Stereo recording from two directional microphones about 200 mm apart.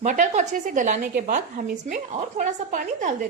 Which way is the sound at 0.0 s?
35° right (ahead or behind).